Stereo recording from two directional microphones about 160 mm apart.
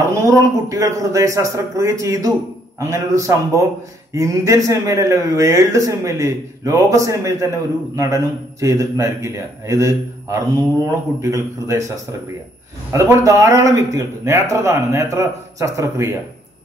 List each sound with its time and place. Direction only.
0.1 s speech: 20° right (ahead or behind)
12.9 s speech: 20° right (ahead or behind)